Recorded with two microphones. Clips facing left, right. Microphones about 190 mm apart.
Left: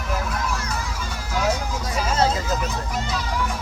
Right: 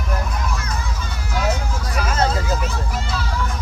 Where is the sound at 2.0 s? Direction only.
30° left (ahead or behind).